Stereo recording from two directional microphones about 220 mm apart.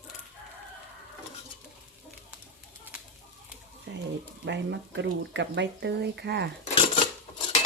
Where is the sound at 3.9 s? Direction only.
55° right (ahead or behind).